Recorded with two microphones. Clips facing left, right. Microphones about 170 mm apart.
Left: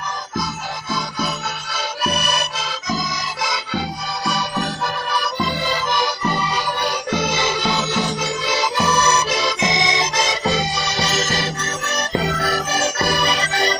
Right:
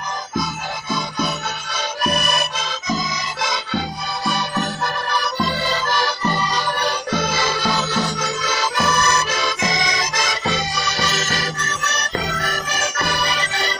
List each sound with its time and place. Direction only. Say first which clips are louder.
0.9 s music: right 1 dB; centre (ahead or behind)
5.9 s music: left 1 dB; 15° left (ahead or behind)
6.2 s music: even; 5° left (ahead or behind)
7.2 s music: left 1 dB; 25° left (ahead or behind)
8.7 s accordion: left 1 dB; 15° left (ahead or behind)
12.4 s music: left 4 dB; 30° left (ahead or behind)